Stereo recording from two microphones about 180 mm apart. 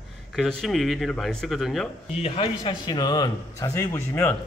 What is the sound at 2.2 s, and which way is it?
A man's voice, 35° left (ahead or behind).